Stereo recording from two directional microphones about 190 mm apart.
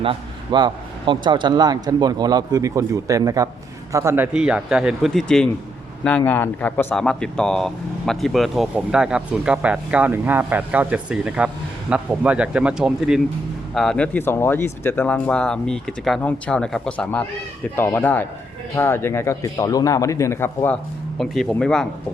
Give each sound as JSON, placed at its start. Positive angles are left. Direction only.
{"t": 0.0, "sound": "a man's voice", "side_deg": -25}
{"t": 21.2, "sound": "speech", "side_deg": 0}